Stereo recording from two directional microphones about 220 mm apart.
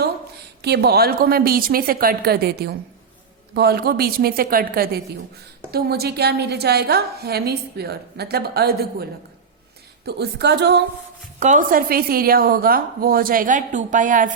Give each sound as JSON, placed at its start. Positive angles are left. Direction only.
{"t": 0.6, "sound": "a woman's voice", "side_deg": -50}
{"t": 10.1, "sound": "a woman's voice", "side_deg": -50}
{"t": 11.3, "sound": "a woman's voice", "side_deg": -35}